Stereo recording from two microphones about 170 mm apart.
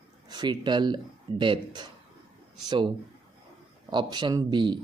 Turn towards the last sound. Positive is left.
turn(degrees=-25)  # may be behind; listen again after turning